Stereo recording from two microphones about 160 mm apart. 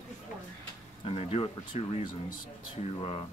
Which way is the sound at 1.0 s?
35° left (ahead or behind).